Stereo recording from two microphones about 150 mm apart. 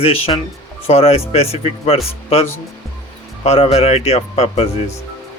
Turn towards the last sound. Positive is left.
turn(degrees=45)  # may be behind; listen again after turning